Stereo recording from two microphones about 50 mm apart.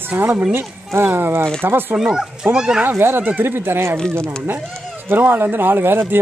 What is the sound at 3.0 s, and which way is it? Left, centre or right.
Speech, right.